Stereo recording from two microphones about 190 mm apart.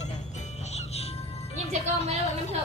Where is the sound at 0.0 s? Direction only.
35° left (ahead or behind).